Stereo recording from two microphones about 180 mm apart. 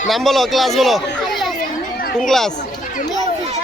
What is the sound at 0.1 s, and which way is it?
A man's voice, centre (ahead or behind).